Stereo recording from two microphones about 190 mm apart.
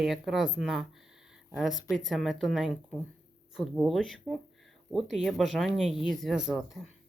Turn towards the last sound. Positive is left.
turn(degrees=0)  # may be behind; listen again after turning